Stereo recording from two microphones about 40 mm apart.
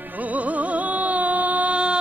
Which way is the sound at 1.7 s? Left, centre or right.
Right.